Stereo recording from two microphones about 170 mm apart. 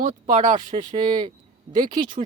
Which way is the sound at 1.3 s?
50° right (ahead or behind).